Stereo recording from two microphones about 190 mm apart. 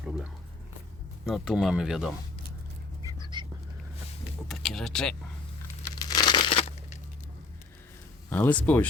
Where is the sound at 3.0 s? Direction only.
25° right (ahead or behind).